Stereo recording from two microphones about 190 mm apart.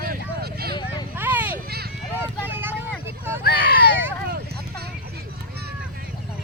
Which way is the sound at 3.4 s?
55° left (ahead or behind).